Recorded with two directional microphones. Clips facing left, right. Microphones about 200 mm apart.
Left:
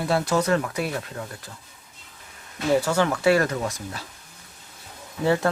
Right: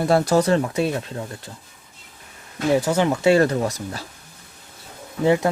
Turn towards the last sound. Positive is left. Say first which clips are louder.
# right 4 dB
turn(degrees=-15)  # may be behind; listen again after turning